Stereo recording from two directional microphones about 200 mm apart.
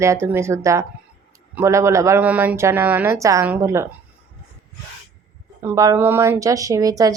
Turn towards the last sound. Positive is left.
turn(degrees=-20)  # may be behind; listen again after turning